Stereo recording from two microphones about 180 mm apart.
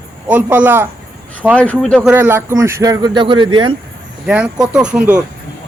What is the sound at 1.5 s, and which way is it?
Speech, 10° left (ahead or behind).